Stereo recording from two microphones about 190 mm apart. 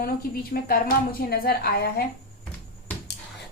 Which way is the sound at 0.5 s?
50° left (ahead or behind).